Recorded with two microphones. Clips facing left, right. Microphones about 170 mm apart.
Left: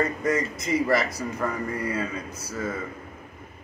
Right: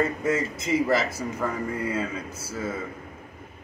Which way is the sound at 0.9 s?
25° right (ahead or behind).